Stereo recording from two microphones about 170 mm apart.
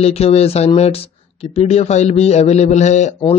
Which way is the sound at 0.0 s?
40° left (ahead or behind).